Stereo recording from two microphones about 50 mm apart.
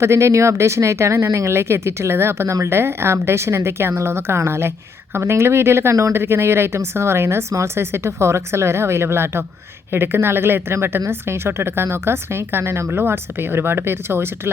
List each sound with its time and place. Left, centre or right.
0.0 s speech: right
2.7 s speech: right
6.1 s a woman's voice: right